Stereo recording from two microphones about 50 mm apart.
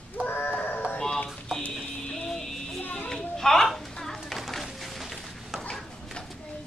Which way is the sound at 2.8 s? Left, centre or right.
Left.